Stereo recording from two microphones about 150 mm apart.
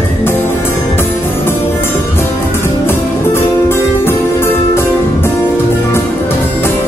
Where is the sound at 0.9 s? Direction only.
15° left (ahead or behind).